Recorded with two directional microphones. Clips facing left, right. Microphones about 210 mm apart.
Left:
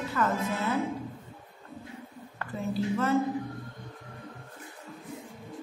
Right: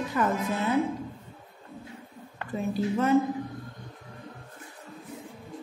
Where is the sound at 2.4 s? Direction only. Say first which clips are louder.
Right 2 dB; 15° right (ahead or behind).